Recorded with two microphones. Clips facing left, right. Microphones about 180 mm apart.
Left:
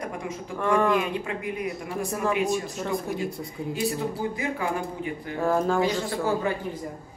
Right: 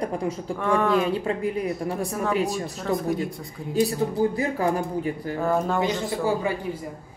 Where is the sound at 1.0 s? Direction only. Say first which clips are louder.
Right 5 dB; 35° right (ahead or behind).